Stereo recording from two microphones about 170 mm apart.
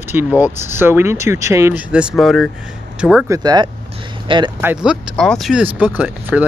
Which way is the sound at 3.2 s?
20° right (ahead or behind).